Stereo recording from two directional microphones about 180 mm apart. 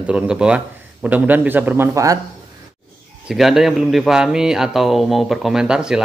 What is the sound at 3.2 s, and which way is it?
Speech, centre (ahead or behind).